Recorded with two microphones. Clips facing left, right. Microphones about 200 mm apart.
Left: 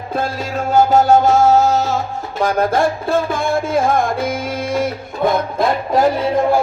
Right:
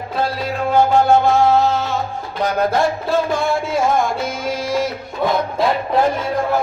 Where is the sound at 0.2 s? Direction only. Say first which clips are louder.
Right 1 dB; 45° left (ahead or behind).